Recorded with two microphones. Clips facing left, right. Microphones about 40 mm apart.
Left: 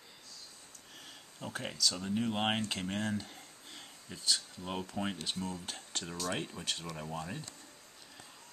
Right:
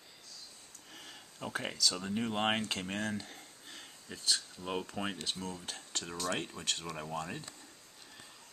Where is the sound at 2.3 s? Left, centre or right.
Centre.